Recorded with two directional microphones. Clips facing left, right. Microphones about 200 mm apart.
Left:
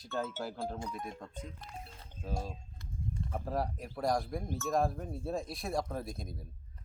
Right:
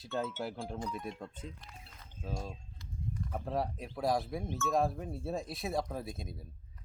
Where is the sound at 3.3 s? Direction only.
Centre (ahead or behind).